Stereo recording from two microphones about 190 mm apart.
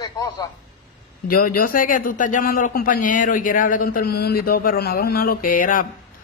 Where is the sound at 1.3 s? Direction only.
50° left (ahead or behind).